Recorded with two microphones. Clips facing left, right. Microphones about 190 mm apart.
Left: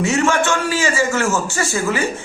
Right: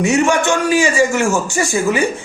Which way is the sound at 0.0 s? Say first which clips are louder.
Right 3 dB; 15° right (ahead or behind).